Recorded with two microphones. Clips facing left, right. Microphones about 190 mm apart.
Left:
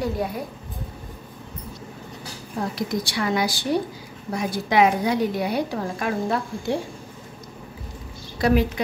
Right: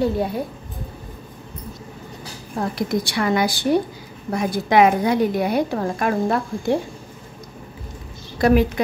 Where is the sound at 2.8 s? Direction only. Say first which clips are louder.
Right 5 dB; 55° right (ahead or behind).